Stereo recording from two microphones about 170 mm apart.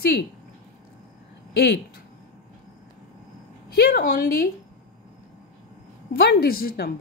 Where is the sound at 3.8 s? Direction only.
60° left (ahead or behind).